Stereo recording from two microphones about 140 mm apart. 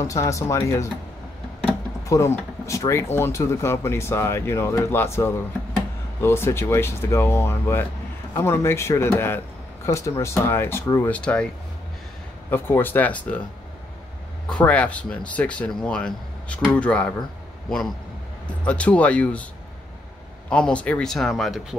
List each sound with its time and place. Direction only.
0.0 s speech: 20° left (ahead or behind)
2.0 s speech: 20° left (ahead or behind)
11.1 s speech: 5° left (ahead or behind)
12.4 s speech: 15° left (ahead or behind)
14.5 s speech: 10° left (ahead or behind)
20.4 s speech: 5° left (ahead or behind)